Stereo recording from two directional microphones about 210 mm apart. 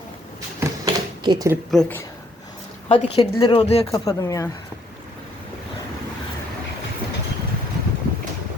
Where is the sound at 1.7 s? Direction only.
5° left (ahead or behind).